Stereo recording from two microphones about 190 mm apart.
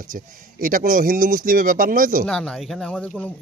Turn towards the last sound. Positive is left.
turn(degrees=5)  # may be behind; listen again after turning